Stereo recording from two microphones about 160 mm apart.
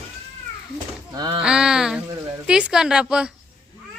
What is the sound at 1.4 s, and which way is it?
Speech, 5° right (ahead or behind).